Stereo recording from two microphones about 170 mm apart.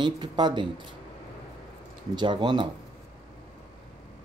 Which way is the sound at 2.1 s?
30° right (ahead or behind).